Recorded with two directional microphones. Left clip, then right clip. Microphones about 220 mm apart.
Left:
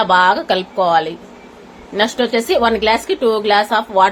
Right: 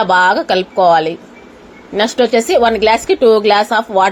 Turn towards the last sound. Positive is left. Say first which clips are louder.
# right 1 dB
turn(degrees=-15)  # may be behind; listen again after turning